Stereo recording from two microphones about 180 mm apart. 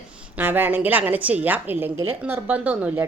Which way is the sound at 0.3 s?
10° right (ahead or behind).